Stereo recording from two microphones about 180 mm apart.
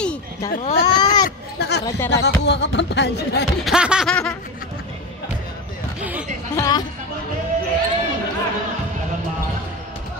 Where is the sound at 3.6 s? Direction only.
5° right (ahead or behind).